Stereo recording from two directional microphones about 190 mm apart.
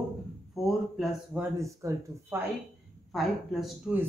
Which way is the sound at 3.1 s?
Centre (ahead or behind).